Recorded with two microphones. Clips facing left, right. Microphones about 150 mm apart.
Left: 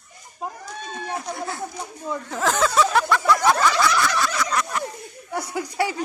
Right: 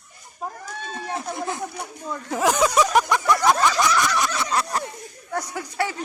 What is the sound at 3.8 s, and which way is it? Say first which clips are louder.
Snicker: even; 20° right (ahead or behind).